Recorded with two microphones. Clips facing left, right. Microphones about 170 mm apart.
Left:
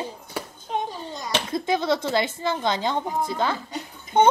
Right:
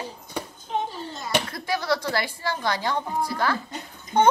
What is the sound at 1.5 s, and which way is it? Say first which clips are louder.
A woman's voice: left 3 dB; 20° left (ahead or behind).